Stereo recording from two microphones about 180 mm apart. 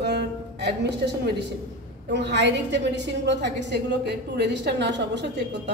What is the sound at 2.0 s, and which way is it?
A woman's voice, 75° right (ahead or behind).